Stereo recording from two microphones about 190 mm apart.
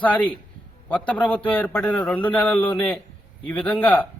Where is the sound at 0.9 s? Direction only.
5° left (ahead or behind).